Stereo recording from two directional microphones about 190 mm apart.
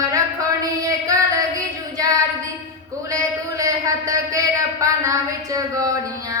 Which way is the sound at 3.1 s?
15° right (ahead or behind).